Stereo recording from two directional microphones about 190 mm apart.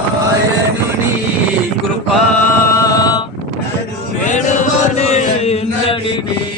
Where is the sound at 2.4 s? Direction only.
15° left (ahead or behind).